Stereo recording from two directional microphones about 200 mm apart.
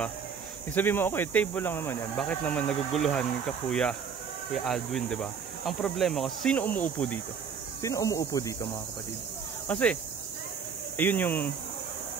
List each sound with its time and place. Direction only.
0.7 s speech: 10° left (ahead or behind)
9.7 s speech: 5° left (ahead or behind)
11.0 s speech: 10° left (ahead or behind)